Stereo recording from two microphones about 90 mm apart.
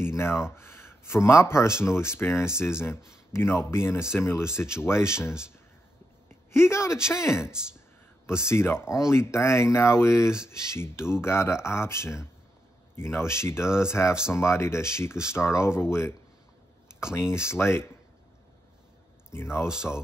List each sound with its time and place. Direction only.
0.0 s speech: 25° left (ahead or behind)
6.5 s speech: 30° left (ahead or behind)
7.5 s speech: 10° right (ahead or behind)
8.3 s speech: 30° left (ahead or behind)
17.3 s speech: 30° left (ahead or behind)
19.3 s speech: 30° left (ahead or behind)